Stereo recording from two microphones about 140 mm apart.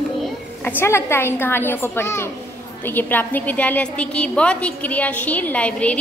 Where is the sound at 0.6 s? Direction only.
15° left (ahead or behind).